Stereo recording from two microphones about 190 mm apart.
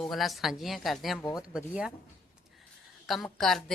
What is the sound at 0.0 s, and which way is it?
A woman's voice, centre (ahead or behind).